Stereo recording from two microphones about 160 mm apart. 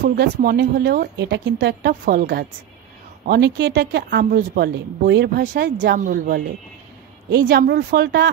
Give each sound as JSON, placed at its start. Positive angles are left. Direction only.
{"t": 0.1, "sound": "a woman's voice", "side_deg": -80}
{"t": 3.3, "sound": "speech", "side_deg": -90}
{"t": 7.2, "sound": "a woman's voice", "side_deg": -90}